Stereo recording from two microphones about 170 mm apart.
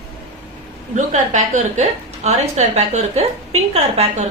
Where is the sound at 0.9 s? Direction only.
45° right (ahead or behind).